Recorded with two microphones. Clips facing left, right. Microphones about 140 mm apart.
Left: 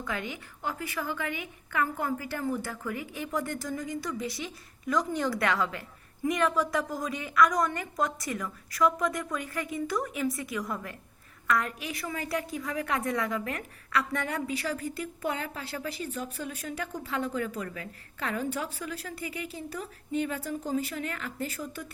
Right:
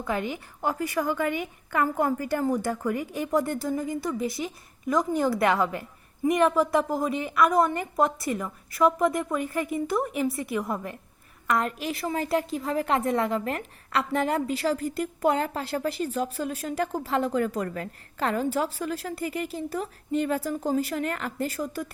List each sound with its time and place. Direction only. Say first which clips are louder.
0.0 s a woman's voice: right 6 dB; 35° right (ahead or behind)